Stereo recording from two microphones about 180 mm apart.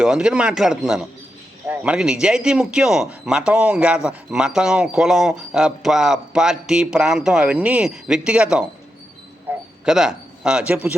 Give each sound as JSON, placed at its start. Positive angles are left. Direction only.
{"t": 0.0, "sound": "a man's voice", "side_deg": -5}